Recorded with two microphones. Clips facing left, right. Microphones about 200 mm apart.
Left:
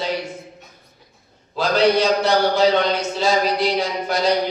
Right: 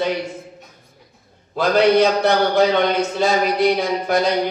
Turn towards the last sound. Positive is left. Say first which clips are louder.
# right 3 dB
turn(degrees=-55)  # may be behind; listen again after turning